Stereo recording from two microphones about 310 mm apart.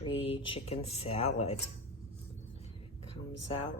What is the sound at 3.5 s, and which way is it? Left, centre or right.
Speech, centre.